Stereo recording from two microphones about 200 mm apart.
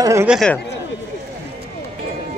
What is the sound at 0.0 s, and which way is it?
Speech, 15° right (ahead or behind).